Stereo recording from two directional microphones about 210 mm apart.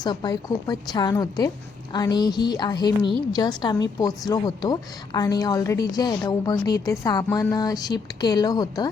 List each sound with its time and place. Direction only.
0.0 s a woman's voice: 20° left (ahead or behind)